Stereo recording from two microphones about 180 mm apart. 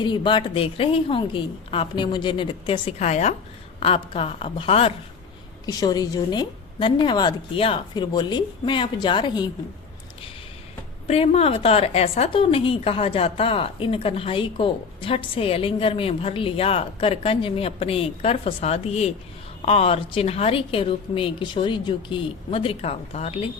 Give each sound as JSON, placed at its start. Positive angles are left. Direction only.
{"t": 0.0, "sound": "a woman's voice", "side_deg": 25}
{"t": 5.6, "sound": "a woman's voice", "side_deg": 20}
{"t": 11.1, "sound": "a woman's voice", "side_deg": 35}